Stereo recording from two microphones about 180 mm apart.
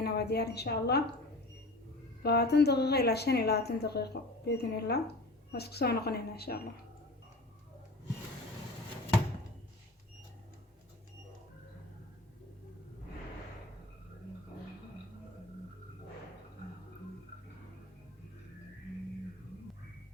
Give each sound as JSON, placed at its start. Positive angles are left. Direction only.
{"t": 0.0, "sound": "a woman's voice", "side_deg": 65}
{"t": 2.2, "sound": "a woman's voice", "side_deg": 65}